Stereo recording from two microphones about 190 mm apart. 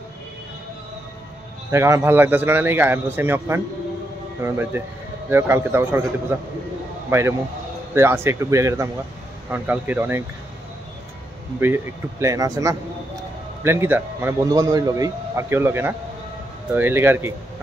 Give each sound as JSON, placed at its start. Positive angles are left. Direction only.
{"t": 1.7, "sound": "a man's voice", "side_deg": -15}
{"t": 4.7, "sound": "a man's voice", "side_deg": -15}
{"t": 11.6, "sound": "a man's voice", "side_deg": -15}